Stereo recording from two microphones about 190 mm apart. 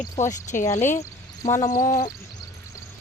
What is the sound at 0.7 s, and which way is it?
Speech, 10° left (ahead or behind).